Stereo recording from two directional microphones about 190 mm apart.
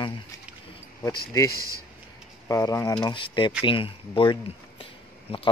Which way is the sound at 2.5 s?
15° left (ahead or behind).